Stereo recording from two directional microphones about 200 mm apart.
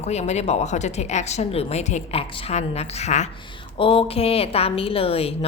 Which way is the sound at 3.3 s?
25° left (ahead or behind).